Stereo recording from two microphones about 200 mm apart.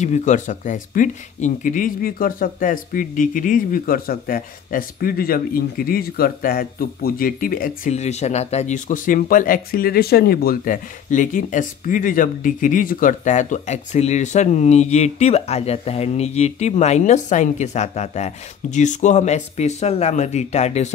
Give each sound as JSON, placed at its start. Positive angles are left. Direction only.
{"t": 0.0, "sound": "speech", "side_deg": 35}